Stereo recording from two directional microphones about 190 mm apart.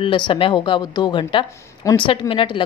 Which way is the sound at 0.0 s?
25° left (ahead or behind).